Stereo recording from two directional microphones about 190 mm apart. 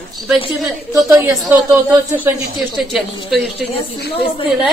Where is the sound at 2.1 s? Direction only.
5° right (ahead or behind).